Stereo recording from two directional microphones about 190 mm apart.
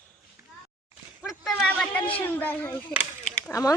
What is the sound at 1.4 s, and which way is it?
Speech, 5° left (ahead or behind).